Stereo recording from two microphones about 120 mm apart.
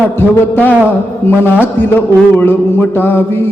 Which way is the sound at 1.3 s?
20° left (ahead or behind).